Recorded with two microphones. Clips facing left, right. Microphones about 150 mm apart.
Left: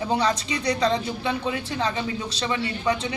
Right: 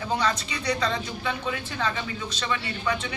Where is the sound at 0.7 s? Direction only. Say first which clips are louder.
Left 4 dB; 30° left (ahead or behind).